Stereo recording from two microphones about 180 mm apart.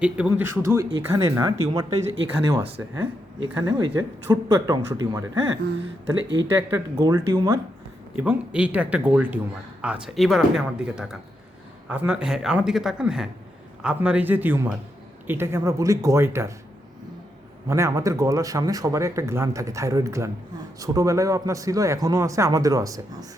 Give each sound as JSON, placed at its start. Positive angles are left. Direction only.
{"t": 0.0, "sound": "a man's voice", "side_deg": -5}
{"t": 8.1, "sound": "a man's voice", "side_deg": -10}
{"t": 17.7, "sound": "a man's voice", "side_deg": -15}